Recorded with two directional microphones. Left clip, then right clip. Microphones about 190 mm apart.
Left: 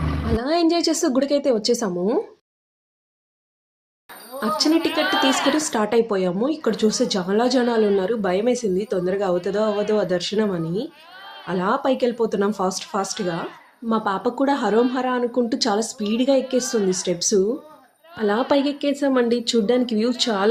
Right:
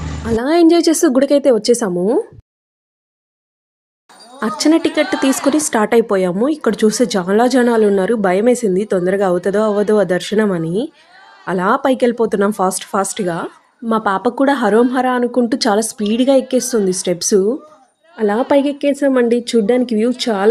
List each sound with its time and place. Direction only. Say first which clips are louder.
0.3 s a woman's voice: right 8 dB; 50° right (ahead or behind)
4.4 s a woman's voice: right 5 dB; 45° right (ahead or behind)
18.2 s a woman's voice: right 6 dB; 30° right (ahead or behind)